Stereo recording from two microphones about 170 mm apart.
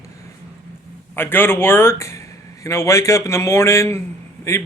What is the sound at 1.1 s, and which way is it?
A man's voice, 15° left (ahead or behind).